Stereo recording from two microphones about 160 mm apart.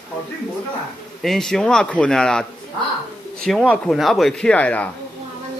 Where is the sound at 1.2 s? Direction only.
Centre (ahead or behind).